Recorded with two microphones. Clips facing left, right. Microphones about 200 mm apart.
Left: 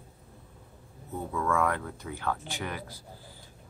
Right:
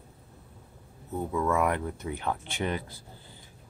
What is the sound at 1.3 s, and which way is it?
Speech, 20° right (ahead or behind).